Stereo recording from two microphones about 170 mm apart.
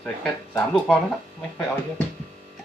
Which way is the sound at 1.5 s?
15° left (ahead or behind).